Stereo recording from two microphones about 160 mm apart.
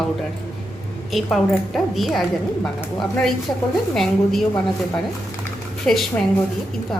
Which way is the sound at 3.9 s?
5° left (ahead or behind).